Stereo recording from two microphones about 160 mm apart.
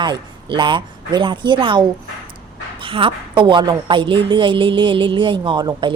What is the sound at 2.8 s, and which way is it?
A woman's voice, 35° right (ahead or behind).